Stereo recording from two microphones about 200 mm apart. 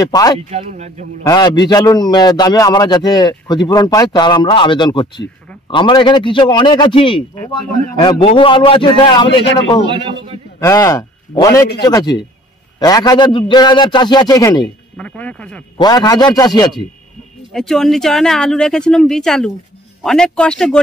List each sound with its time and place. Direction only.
0.0 s a man's voice: 20° left (ahead or behind)
0.5 s speech: 35° right (ahead or behind)
1.2 s a man's voice: 20° left (ahead or behind)
9.9 s a man's voice: 25° right (ahead or behind)
10.6 s a man's voice: 15° left (ahead or behind)
15.0 s speech: 5° left (ahead or behind)
15.8 s a man's voice: 20° left (ahead or behind)
17.5 s speech: centre (ahead or behind)